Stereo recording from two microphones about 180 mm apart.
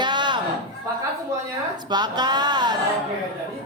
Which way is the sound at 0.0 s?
25° right (ahead or behind).